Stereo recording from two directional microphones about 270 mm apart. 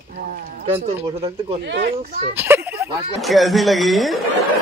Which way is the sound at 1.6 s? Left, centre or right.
Right.